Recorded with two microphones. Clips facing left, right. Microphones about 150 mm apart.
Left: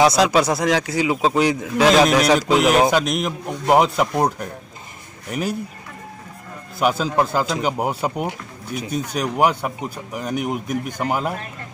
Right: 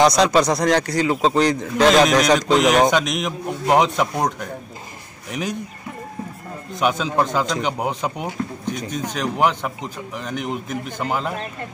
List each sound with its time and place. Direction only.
0.0 s speech: 5° left (ahead or behind)
5.3 s speech: 5° left (ahead or behind)
6.8 s speech: 5° left (ahead or behind)